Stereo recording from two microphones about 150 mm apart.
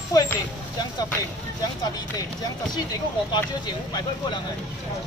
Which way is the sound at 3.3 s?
30° left (ahead or behind).